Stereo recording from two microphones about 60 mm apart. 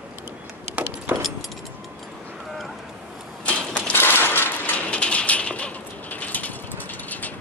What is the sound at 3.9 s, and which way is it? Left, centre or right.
Coin, left.